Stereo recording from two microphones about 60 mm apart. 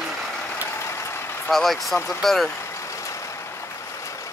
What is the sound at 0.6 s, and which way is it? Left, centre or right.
Vehicle, left.